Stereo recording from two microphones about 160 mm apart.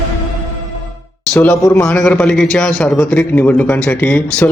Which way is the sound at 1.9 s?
5° left (ahead or behind).